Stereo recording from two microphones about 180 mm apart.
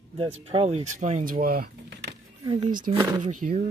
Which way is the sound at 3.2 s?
40° right (ahead or behind).